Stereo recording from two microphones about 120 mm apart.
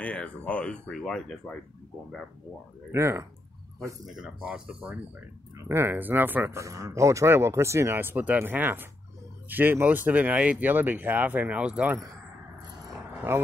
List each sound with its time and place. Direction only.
0.0 s speech: 10° left (ahead or behind)
2.9 s speech: 25° right (ahead or behind)
4.2 s speech: 10° right (ahead or behind)
5.6 s speech: 20° right (ahead or behind)